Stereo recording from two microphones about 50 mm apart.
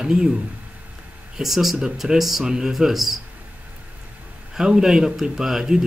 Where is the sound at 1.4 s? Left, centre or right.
Centre.